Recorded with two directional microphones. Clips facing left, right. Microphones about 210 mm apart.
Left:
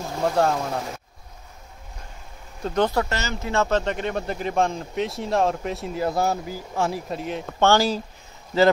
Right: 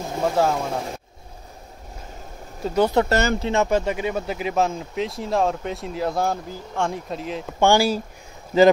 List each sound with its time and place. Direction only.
0.2 s speech: centre (ahead or behind)
2.6 s speech: 5° right (ahead or behind)
3.1 s speech: 55° right (ahead or behind)
3.4 s speech: 15° right (ahead or behind); by 7.5 s centre (ahead or behind)
7.6 s speech: 10° right (ahead or behind)